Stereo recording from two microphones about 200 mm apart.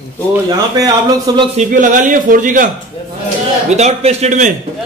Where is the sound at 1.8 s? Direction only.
40° right (ahead or behind).